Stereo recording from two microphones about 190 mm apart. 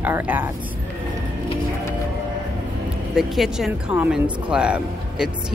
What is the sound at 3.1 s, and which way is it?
Speech, centre (ahead or behind).